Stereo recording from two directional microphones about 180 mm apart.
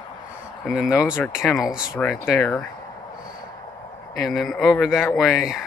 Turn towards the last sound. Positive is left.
turn(degrees=0)  # may be behind; listen again after turning